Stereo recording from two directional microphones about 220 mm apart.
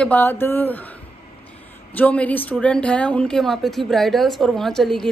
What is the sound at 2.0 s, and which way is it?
A woman's voice, 5° left (ahead or behind).